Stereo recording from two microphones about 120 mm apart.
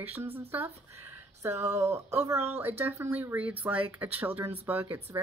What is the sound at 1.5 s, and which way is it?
Speech, 65° right (ahead or behind).